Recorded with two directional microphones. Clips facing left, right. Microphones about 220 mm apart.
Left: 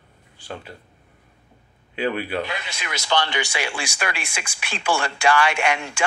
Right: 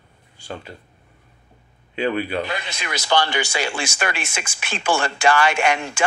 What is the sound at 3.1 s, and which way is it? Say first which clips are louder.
Speech: right 3 dB; 45° right (ahead or behind).